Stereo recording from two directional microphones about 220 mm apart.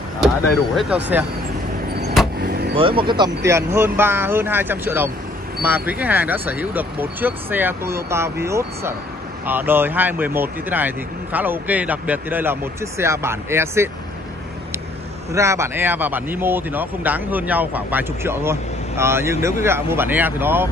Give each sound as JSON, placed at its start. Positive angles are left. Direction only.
{"t": 0.7, "sound": "speech", "side_deg": -5}
{"t": 2.4, "sound": "vehicle", "side_deg": -45}
{"t": 2.7, "sound": "speech", "side_deg": -25}
{"t": 15.3, "sound": "speech", "side_deg": -15}